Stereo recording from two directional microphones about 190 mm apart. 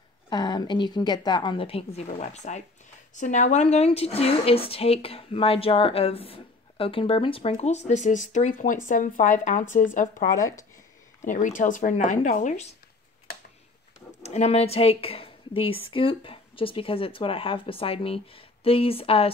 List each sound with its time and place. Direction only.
0.3 s a woman's voice: 25° left (ahead or behind); by 10.2 s 40° left (ahead or behind)
11.2 s speech: 40° left (ahead or behind)
14.2 s a woman's voice: 35° left (ahead or behind)